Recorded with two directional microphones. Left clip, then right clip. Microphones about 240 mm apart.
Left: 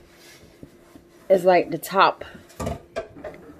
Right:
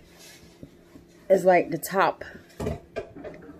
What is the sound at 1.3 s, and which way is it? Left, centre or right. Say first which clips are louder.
Speech: left 2 dB; centre.